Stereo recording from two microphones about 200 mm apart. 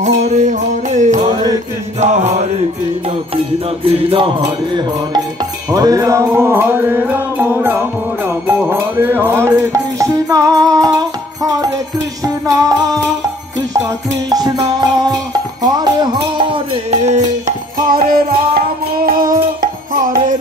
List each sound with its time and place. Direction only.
0.0 s music: 35° right (ahead or behind)
3.8 s music: 25° right (ahead or behind); by 20.3 s 45° right (ahead or behind)